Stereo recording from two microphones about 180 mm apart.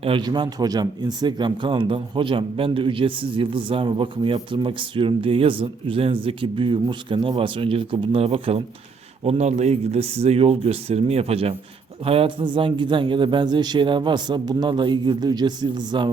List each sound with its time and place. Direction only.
0.0 s speech: 25° right (ahead or behind)